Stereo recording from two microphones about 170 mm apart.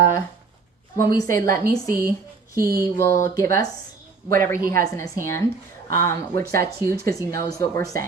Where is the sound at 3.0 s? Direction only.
15° left (ahead or behind).